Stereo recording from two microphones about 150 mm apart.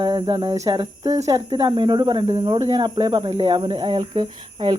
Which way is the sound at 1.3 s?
25° right (ahead or behind).